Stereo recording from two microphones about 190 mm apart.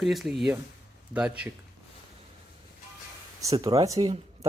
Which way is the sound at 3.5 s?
25° right (ahead or behind).